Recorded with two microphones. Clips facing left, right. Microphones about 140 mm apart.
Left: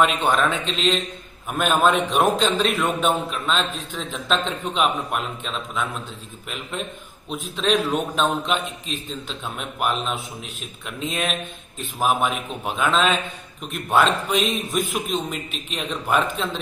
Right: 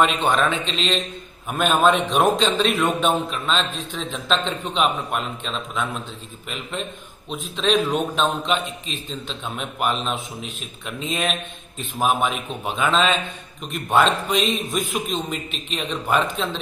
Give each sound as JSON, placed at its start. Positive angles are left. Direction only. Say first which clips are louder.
{"t": 0.0, "sound": "a man's voice", "louder": "even", "side_deg": 5}
{"t": 7.2, "sound": "a man's voice", "louder": "even", "side_deg": 5}